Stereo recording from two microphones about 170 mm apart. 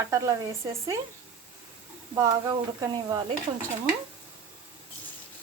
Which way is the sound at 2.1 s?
20° right (ahead or behind).